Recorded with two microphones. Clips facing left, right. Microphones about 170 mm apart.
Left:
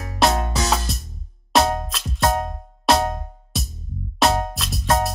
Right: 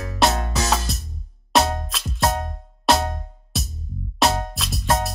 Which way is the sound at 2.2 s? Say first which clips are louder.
Left 2 dB; 30° left (ahead or behind).